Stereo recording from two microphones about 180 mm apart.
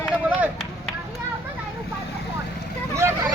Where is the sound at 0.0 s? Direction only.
5° right (ahead or behind).